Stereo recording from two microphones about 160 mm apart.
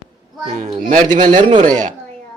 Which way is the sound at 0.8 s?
55° right (ahead or behind).